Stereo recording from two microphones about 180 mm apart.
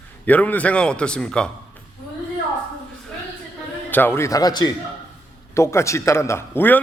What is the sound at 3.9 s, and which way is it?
A man's voice, 10° left (ahead or behind).